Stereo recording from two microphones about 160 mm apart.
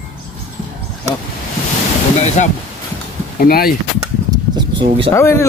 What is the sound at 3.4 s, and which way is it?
Speech, 65° left (ahead or behind).